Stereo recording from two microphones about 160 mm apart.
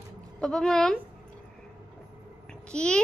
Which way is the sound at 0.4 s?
5° left (ahead or behind).